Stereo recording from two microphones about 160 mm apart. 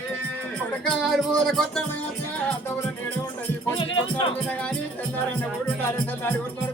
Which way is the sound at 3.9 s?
30° left (ahead or behind).